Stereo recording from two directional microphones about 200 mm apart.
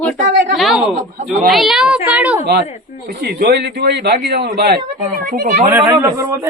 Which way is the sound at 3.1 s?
50° right (ahead or behind).